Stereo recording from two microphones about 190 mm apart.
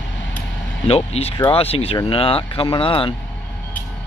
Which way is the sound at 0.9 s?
30° left (ahead or behind).